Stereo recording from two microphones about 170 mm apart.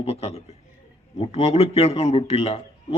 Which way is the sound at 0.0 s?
35° left (ahead or behind).